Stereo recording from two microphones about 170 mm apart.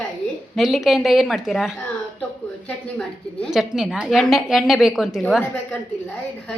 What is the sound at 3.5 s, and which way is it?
A woman's voice, 5° right (ahead or behind).